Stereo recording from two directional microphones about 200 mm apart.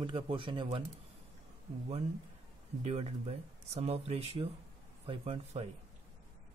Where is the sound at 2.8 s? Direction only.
35° right (ahead or behind).